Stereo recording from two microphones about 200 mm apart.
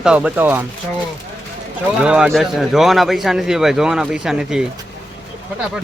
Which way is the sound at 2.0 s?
5° right (ahead or behind).